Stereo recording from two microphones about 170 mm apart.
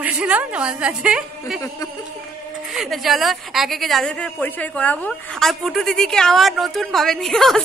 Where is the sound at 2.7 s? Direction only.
Centre (ahead or behind).